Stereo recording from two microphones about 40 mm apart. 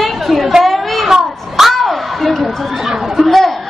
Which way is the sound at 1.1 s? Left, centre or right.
Centre.